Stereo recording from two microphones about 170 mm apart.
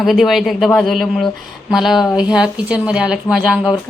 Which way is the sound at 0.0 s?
Centre (ahead or behind).